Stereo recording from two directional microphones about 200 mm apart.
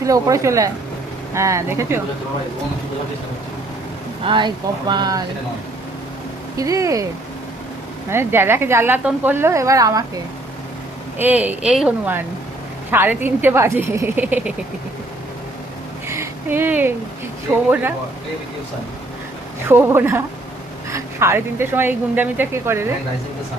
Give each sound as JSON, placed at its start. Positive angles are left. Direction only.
{"t": 0.0, "sound": "speech", "side_deg": -15}
{"t": 4.2, "sound": "speech", "side_deg": -25}
{"t": 6.6, "sound": "speech", "side_deg": -15}
{"t": 8.1, "sound": "speech", "side_deg": -10}
{"t": 11.2, "sound": "speech", "side_deg": -10}
{"t": 16.0, "sound": "a sound", "side_deg": -15}
{"t": 19.6, "sound": "speech", "side_deg": -10}